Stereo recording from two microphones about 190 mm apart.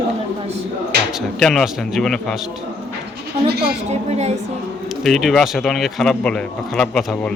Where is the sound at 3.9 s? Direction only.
35° right (ahead or behind).